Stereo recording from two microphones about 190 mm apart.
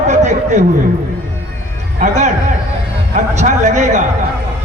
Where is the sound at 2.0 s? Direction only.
40° right (ahead or behind).